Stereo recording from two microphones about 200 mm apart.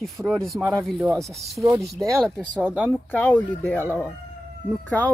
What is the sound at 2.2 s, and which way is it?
Speech, centre (ahead or behind).